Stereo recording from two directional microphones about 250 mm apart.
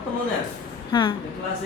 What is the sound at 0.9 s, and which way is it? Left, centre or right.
Speech, centre.